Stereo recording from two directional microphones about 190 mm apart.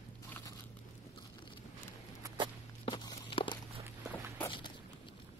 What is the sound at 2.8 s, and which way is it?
Walk, 20° left (ahead or behind).